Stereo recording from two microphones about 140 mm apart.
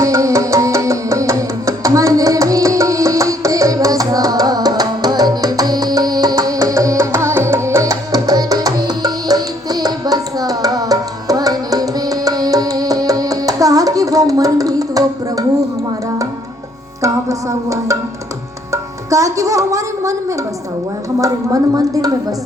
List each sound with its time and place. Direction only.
0.0 s music: 25° right (ahead or behind)
17.0 s music: 25° right (ahead or behind)
21.2 s a sound: 25° right (ahead or behind)